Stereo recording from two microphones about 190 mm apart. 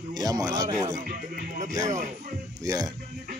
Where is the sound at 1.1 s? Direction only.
40° right (ahead or behind).